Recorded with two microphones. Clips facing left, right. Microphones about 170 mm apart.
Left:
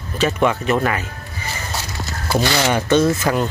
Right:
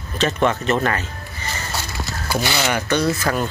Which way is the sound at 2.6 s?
25° left (ahead or behind).